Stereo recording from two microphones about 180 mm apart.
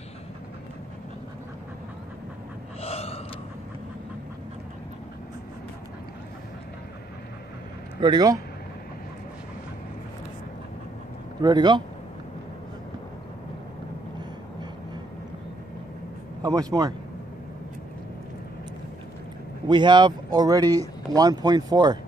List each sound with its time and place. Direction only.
2.8 s gasp: 35° left (ahead or behind)
8.0 s speech: 25° right (ahead or behind)
11.4 s speech: 25° right (ahead or behind)
16.4 s speech: 20° right (ahead or behind)
19.7 s speech: 25° right (ahead or behind)